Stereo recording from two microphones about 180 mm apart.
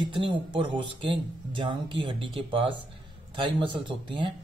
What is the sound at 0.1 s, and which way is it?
Speech, 25° right (ahead or behind).